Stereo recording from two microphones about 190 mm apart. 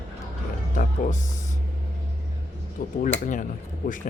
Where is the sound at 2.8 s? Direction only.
50° left (ahead or behind).